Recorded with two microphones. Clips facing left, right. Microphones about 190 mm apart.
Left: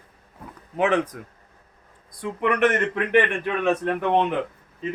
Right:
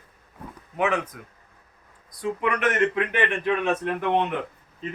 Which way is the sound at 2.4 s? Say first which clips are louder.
Left 5 dB; 60° left (ahead or behind).